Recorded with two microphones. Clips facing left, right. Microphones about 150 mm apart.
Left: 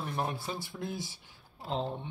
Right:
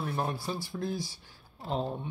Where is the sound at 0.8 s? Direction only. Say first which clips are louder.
Right 4 dB; 20° left (ahead or behind).